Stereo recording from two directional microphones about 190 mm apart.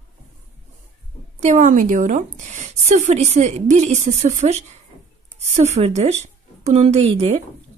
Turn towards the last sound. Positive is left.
turn(degrees=-30)  # may be behind; listen again after turning